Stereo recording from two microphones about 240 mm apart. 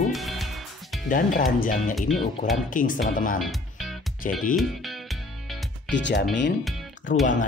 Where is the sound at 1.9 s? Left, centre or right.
Centre.